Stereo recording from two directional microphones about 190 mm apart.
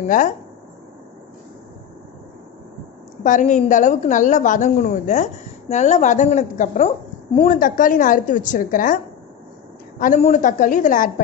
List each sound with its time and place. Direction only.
0.0 s a woman's voice: 40° left (ahead or behind)
3.3 s a woman's voice: 40° left (ahead or behind)